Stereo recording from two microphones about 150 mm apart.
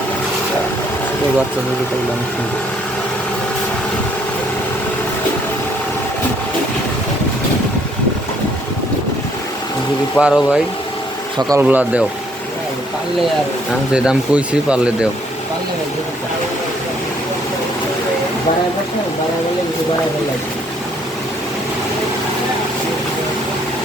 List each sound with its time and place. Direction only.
10.2 s speech: 5° right (ahead or behind)
11.4 s speech: 20° right (ahead or behind)
13.9 s speech: 5° right (ahead or behind)